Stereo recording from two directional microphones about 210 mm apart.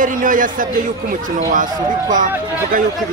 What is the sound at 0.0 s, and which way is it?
Speech, 40° right (ahead or behind).